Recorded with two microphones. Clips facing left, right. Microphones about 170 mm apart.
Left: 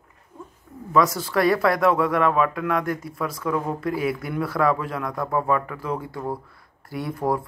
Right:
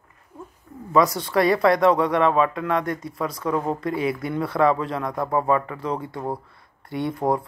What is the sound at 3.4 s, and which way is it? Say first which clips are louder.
Speech: right 1 dB; 20° right (ahead or behind).